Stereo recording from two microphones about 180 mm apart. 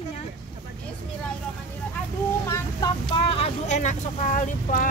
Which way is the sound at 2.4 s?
15° left (ahead or behind).